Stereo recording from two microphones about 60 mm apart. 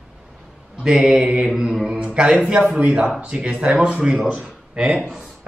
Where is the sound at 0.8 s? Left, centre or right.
Centre.